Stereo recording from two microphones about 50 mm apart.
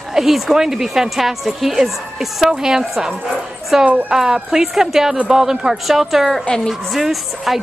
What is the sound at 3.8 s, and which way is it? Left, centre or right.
Speech, right.